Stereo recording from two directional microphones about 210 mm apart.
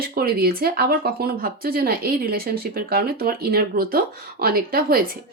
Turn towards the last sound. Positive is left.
turn(degrees=-45)  # may be behind; listen again after turning